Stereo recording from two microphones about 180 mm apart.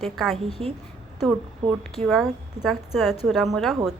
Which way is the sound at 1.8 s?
Centre (ahead or behind).